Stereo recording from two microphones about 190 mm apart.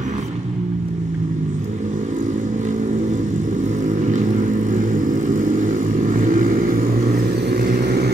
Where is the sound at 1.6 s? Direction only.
40° right (ahead or behind).